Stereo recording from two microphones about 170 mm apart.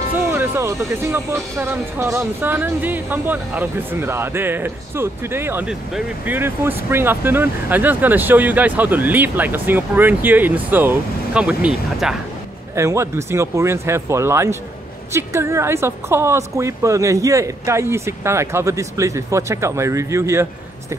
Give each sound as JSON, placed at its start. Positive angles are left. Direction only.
{"t": 0.1, "sound": "speech", "side_deg": -10}
{"t": 12.7, "sound": "speech", "side_deg": -15}